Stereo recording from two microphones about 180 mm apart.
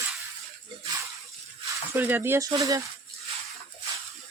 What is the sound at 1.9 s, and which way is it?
Speech, 10° right (ahead or behind).